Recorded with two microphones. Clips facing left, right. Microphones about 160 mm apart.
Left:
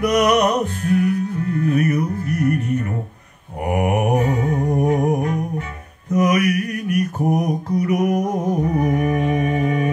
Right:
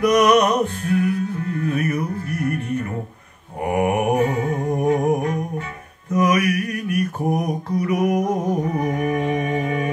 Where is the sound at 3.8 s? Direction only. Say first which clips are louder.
Right 1 dB; 35° left (ahead or behind).